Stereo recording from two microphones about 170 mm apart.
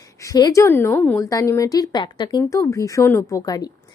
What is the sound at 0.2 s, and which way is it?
A woman's voice, 20° left (ahead or behind).